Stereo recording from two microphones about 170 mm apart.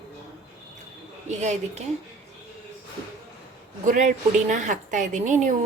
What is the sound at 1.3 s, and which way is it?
Speech, 45° right (ahead or behind).